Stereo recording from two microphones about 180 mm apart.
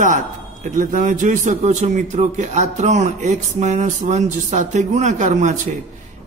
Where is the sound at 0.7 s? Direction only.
45° right (ahead or behind).